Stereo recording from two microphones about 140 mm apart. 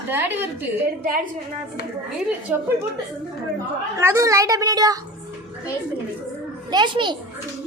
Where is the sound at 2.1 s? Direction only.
10° right (ahead or behind).